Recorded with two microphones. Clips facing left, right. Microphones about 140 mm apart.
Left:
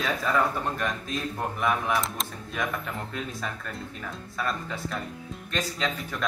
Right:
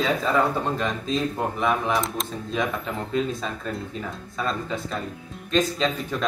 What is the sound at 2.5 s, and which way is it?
Speech, 25° right (ahead or behind).